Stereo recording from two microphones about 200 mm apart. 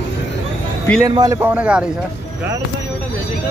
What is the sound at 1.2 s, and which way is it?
Speech, 15° right (ahead or behind).